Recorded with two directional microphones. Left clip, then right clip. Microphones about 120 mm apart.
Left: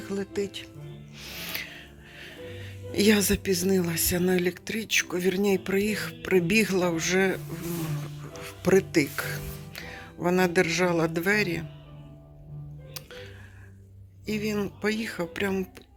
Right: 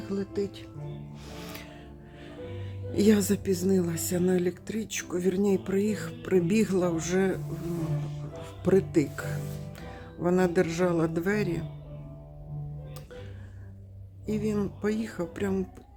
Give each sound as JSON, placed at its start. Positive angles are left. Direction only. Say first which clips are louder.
{"t": 0.0, "sound": "speech", "louder": "left 1 dB", "side_deg": -10}
{"t": 1.2, "sound": "music", "louder": "left 9 dB", "side_deg": -20}
{"t": 2.9, "sound": "speech", "louder": "left 2 dB", "side_deg": -5}
{"t": 8.4, "sound": "speech", "louder": "left 2 dB", "side_deg": 0}
{"t": 9.7, "sound": "music", "louder": "left 4 dB", "side_deg": -10}
{"t": 10.2, "sound": "speech", "louder": "left 2 dB", "side_deg": -10}
{"t": 14.3, "sound": "speech", "louder": "left 1 dB", "side_deg": -10}